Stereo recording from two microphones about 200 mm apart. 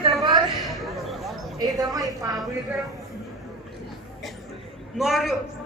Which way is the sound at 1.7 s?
15° right (ahead or behind).